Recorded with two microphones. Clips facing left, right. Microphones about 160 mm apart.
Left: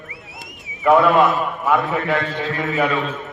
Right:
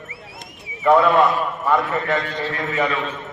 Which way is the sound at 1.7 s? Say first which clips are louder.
Left 1 dB; 5° left (ahead or behind).